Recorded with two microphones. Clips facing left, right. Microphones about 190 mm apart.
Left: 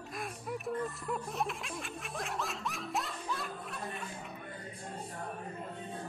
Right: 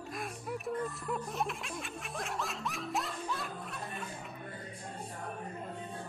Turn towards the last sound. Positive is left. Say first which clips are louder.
# left 1 dB
turn(degrees=0)  # may be behind; listen again after turning